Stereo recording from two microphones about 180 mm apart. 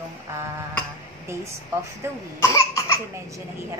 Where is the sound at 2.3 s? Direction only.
15° left (ahead or behind).